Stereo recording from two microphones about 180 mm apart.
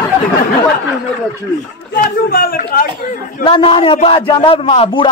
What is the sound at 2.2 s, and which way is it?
Speech, 55° left (ahead or behind).